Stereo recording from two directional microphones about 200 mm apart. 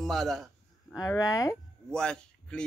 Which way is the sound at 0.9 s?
15° left (ahead or behind).